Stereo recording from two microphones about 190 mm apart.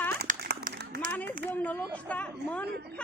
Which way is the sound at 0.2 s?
60° right (ahead or behind).